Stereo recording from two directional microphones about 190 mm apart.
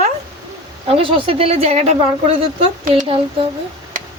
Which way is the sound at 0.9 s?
30° right (ahead or behind).